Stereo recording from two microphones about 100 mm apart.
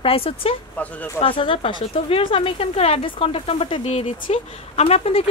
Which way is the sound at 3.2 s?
75° left (ahead or behind).